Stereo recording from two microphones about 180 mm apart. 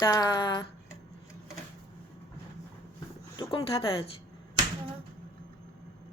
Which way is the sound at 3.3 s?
30° left (ahead or behind).